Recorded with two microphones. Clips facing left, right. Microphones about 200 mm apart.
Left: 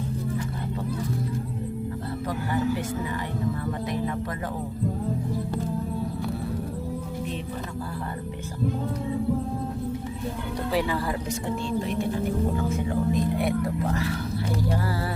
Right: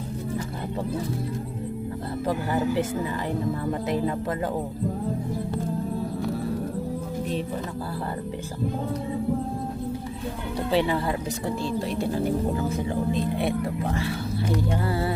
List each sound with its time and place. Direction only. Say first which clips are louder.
2.2 s speech: right 2 dB; 25° right (ahead or behind)
10.7 s speech: right 3 dB; 25° right (ahead or behind)